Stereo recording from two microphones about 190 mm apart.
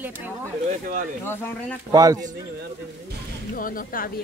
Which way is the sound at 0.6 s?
45° right (ahead or behind).